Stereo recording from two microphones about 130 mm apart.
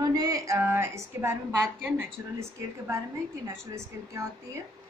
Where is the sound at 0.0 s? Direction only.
30° right (ahead or behind).